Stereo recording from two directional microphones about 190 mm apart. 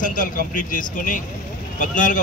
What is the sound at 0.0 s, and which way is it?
Speech, 45° left (ahead or behind).